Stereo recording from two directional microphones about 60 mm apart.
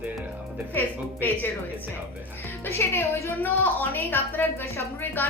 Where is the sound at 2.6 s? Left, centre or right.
Left.